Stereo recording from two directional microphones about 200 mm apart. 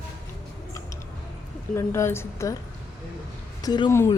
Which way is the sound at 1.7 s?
15° left (ahead or behind).